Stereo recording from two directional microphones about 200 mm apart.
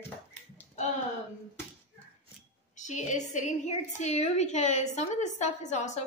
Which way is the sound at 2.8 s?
35° left (ahead or behind).